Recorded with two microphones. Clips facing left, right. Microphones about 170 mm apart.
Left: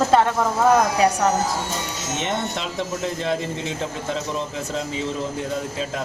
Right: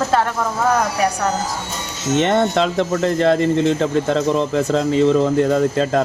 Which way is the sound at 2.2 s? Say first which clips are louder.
Right 11 dB; 75° right (ahead or behind).